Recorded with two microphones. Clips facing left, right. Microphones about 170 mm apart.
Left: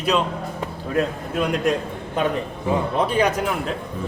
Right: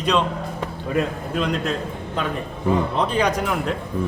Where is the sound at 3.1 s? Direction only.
5° left (ahead or behind).